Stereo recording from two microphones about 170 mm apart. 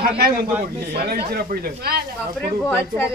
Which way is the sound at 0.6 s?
65° right (ahead or behind).